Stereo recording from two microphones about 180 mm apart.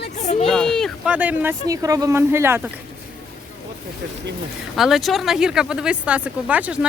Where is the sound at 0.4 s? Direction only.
5° left (ahead or behind).